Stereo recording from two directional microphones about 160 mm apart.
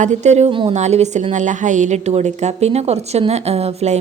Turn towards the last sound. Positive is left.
turn(degrees=-40)  # may be behind; listen again after turning